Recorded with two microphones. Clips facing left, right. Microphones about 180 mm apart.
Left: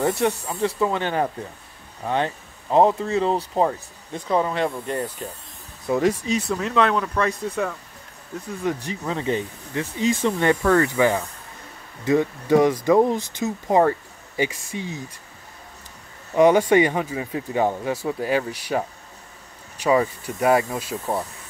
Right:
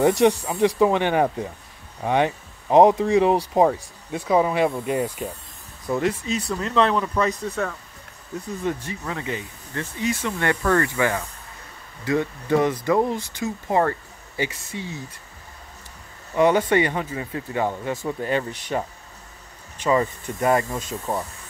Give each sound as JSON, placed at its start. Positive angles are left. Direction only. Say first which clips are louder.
{"t": 0.0, "sound": "speech", "louder": "right 4 dB", "side_deg": -15}
{"t": 5.9, "sound": "speech", "louder": "left 3 dB", "side_deg": 15}
{"t": 6.5, "sound": "speech", "louder": "right 1 dB", "side_deg": 5}
{"t": 8.6, "sound": "speech", "louder": "left 3 dB", "side_deg": 15}
{"t": 9.1, "sound": "speech", "louder": "left 7 dB", "side_deg": 30}
{"t": 16.3, "sound": "speech", "louder": "left 3 dB", "side_deg": 15}